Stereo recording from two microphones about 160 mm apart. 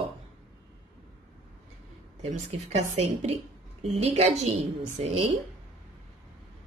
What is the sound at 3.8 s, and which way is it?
A woman's voice, 40° right (ahead or behind).